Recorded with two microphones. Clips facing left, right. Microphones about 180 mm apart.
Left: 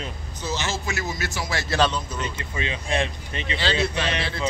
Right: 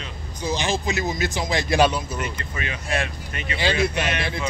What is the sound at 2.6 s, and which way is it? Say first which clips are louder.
Speech: left 2 dB; 25° left (ahead or behind).